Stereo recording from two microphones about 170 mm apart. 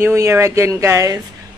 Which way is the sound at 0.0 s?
15° right (ahead or behind).